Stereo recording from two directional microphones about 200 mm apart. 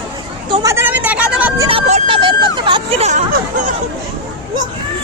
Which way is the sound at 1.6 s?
30° right (ahead or behind).